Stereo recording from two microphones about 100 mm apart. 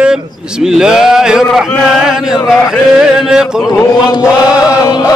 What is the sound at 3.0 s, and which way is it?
Speech, 5° right (ahead or behind).